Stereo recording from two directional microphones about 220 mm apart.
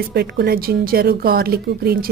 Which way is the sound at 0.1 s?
45° right (ahead or behind).